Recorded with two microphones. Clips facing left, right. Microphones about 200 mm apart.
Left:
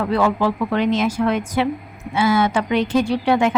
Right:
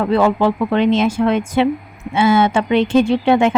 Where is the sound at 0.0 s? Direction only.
25° right (ahead or behind).